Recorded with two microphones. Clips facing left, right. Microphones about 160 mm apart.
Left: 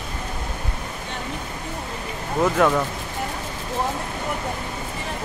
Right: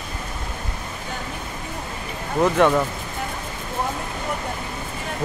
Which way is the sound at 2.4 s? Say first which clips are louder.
Right 2 dB; centre (ahead or behind).